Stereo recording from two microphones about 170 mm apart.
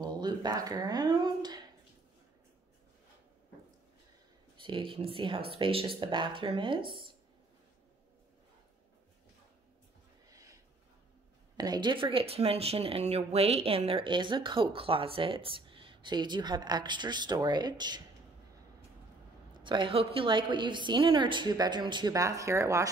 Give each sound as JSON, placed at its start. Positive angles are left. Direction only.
{"t": 0.0, "sound": "speech", "side_deg": -25}
{"t": 4.6, "sound": "speech", "side_deg": -30}
{"t": 10.3, "sound": "a sound", "side_deg": -20}
{"t": 11.5, "sound": "speech", "side_deg": -25}
{"t": 19.6, "sound": "speech", "side_deg": -30}